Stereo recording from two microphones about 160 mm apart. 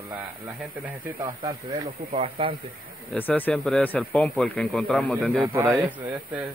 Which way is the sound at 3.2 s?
10° left (ahead or behind).